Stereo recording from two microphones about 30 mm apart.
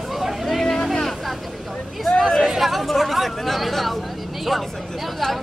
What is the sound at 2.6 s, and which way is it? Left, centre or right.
Speech, centre.